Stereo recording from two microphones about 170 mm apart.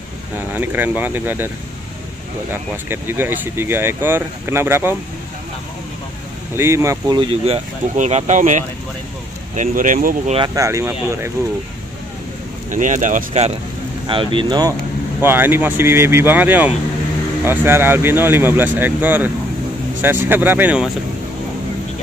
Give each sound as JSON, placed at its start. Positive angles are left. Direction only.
{"t": 0.4, "sound": "speech", "side_deg": -10}
{"t": 2.5, "sound": "speech", "side_deg": -15}
{"t": 6.5, "sound": "speech", "side_deg": -15}
{"t": 7.4, "sound": "speech", "side_deg": -40}
{"t": 10.4, "sound": "speech", "side_deg": -20}
{"t": 12.7, "sound": "speech", "side_deg": -50}
{"t": 14.0, "sound": "speech", "side_deg": -30}
{"t": 15.2, "sound": "speech", "side_deg": -10}